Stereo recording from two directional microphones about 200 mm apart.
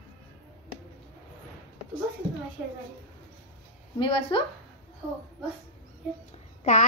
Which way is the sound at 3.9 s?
25° left (ahead or behind).